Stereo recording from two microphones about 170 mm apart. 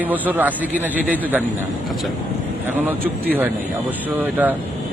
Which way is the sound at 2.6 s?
10° right (ahead or behind).